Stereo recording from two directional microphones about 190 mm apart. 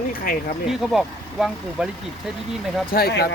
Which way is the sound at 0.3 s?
45° left (ahead or behind).